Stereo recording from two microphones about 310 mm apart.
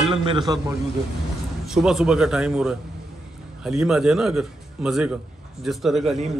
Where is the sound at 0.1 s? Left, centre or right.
Centre.